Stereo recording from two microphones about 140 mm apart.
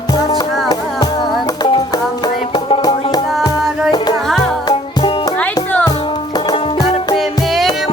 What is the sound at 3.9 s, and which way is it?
Music, 30° left (ahead or behind).